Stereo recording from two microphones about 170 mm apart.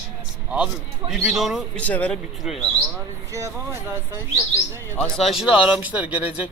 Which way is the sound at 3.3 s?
20° right (ahead or behind).